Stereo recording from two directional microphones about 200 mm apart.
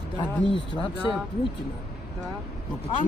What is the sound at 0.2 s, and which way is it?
Speech, 25° left (ahead or behind).